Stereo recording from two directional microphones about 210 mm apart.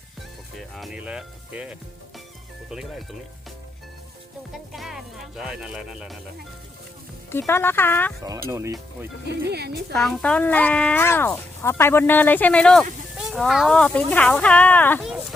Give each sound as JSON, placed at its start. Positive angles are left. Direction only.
{"t": 0.5, "sound": "speech", "side_deg": 0}
{"t": 4.5, "sound": "speech", "side_deg": 0}
{"t": 7.3, "sound": "speech", "side_deg": 10}
{"t": 8.4, "sound": "speech", "side_deg": -15}
{"t": 9.5, "sound": "a woman's voice", "side_deg": -50}
{"t": 9.9, "sound": "speech", "side_deg": 0}